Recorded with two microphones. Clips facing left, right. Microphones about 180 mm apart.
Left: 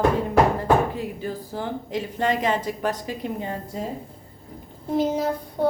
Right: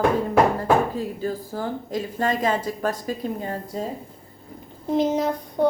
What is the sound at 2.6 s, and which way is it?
Speech, 20° left (ahead or behind).